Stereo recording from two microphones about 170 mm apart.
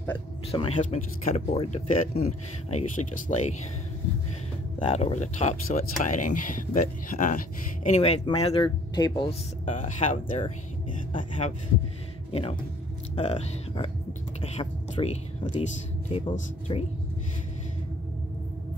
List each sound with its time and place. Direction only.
0.5 s speech: 35° left (ahead or behind)
4.8 s speech: 40° left (ahead or behind)
8.6 s speech: 25° left (ahead or behind)
9.7 s speech: 45° left (ahead or behind)
12.3 s a man's voice: 35° left (ahead or behind)